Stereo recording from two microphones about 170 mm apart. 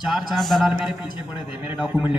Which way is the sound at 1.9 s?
30° left (ahead or behind).